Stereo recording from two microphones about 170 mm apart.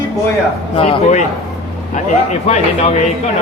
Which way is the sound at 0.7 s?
30° left (ahead or behind).